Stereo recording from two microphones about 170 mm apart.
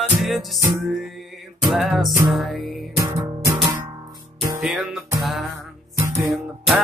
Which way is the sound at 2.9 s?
20° right (ahead or behind).